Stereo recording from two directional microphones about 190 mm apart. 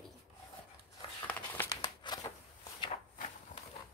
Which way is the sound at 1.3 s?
10° left (ahead or behind).